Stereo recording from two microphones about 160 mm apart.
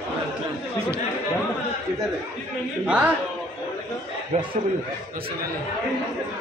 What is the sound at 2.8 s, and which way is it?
Speech, 10° right (ahead or behind).